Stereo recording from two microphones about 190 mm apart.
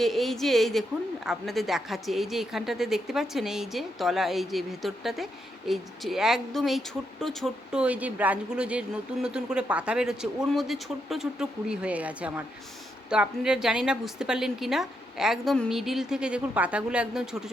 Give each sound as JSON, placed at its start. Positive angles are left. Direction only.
{"t": 0.0, "sound": "a woman's voice", "side_deg": 0}